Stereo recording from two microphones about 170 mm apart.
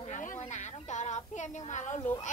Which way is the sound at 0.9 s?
45° left (ahead or behind).